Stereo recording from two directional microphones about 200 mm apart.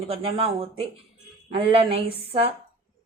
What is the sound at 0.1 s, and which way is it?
Speech, 30° right (ahead or behind).